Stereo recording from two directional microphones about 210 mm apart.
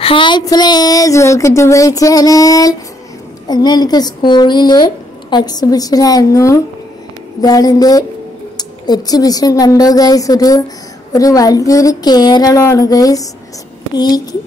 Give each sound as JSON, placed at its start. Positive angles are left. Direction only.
{"t": 0.0, "sound": "speech", "side_deg": 25}